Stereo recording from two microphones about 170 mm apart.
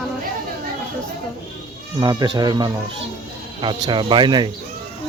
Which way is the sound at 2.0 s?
25° right (ahead or behind).